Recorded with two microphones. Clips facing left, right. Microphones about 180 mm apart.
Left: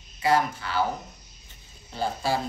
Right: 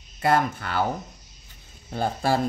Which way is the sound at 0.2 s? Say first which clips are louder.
Right 1 dB; 55° right (ahead or behind).